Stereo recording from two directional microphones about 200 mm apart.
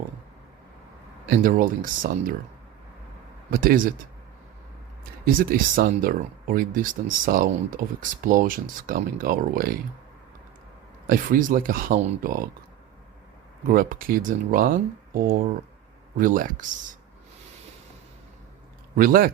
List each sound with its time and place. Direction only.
1.3 s speech: 45° right (ahead or behind)
3.5 s speech: 45° right (ahead or behind)
5.2 s speech: 45° right (ahead or behind)
11.0 s speech: 45° right (ahead or behind)
13.7 s speech: 45° right (ahead or behind)
18.9 s speech: 45° right (ahead or behind)